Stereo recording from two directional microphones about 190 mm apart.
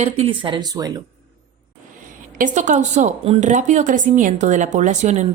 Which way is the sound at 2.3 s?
40° right (ahead or behind).